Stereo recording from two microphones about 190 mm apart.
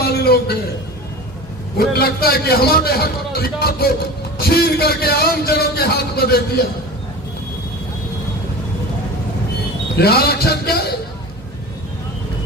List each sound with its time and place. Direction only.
0.0 s a sound: 55° left (ahead or behind)
1.8 s a man's voice: 55° left (ahead or behind)
9.9 s a man's voice: 55° left (ahead or behind)